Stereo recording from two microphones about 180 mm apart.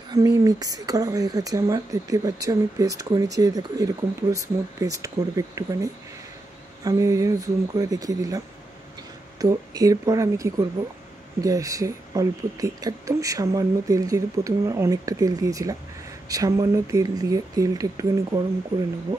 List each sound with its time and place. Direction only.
0.1 s speech: 20° right (ahead or behind)
6.8 s speech: 20° right (ahead or behind)
9.4 s speech: 20° right (ahead or behind)